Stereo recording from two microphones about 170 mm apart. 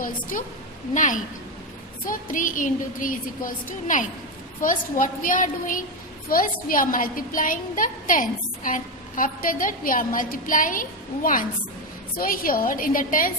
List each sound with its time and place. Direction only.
0.0 s a woman's voice: 55° left (ahead or behind)